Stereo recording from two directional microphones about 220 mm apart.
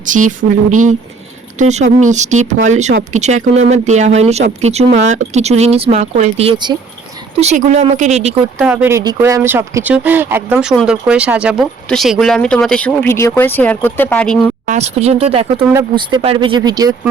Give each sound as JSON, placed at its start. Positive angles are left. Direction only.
{"t": 0.0, "sound": "speech", "side_deg": -35}
{"t": 7.3, "sound": "speech", "side_deg": -30}
{"t": 8.5, "sound": "speech", "side_deg": -5}
{"t": 14.7, "sound": "speech", "side_deg": -30}